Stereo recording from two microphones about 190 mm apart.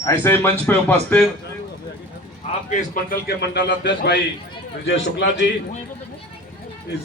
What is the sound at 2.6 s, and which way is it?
A man's voice, 45° left (ahead or behind).